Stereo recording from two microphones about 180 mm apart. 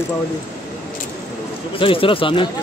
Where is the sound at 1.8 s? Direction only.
30° left (ahead or behind).